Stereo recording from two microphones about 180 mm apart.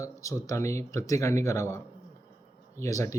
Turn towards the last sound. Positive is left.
turn(degrees=15)  # may be behind; listen again after turning